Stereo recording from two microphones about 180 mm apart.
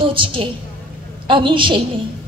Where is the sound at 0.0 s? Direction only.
30° right (ahead or behind).